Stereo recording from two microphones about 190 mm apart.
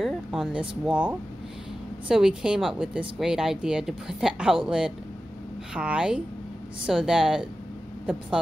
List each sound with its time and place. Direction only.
0.0 s speech: 5° right (ahead or behind)